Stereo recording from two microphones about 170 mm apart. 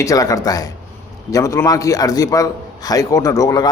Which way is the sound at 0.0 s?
20° left (ahead or behind).